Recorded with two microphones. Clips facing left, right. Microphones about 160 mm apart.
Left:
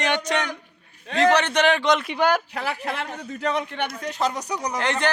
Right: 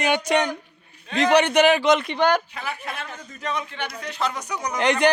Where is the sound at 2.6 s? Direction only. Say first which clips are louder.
Left 4 dB; 80° left.